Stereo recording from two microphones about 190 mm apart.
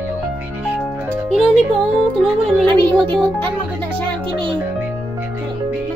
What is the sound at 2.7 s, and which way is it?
Music, 25° right (ahead or behind).